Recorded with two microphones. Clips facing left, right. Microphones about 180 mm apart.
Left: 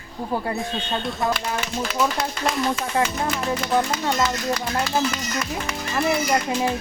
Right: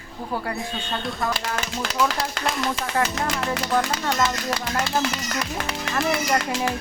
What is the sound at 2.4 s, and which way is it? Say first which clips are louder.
Speech: left 2 dB; 90° right.